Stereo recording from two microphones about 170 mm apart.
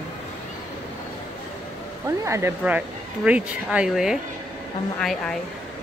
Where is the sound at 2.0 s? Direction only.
15° right (ahead or behind); by 5.3 s 5° left (ahead or behind).